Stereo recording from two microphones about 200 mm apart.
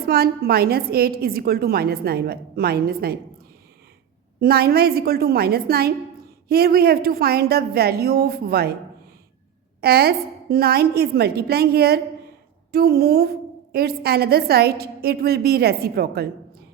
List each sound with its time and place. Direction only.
0.1 s a woman's voice: 50° right (ahead or behind)
4.4 s a woman's voice: 50° right (ahead or behind)
9.8 s a woman's voice: 50° right (ahead or behind)